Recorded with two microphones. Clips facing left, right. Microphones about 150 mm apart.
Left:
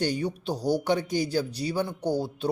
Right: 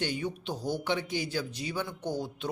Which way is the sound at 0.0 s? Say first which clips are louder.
Left 5 dB; 40° left (ahead or behind).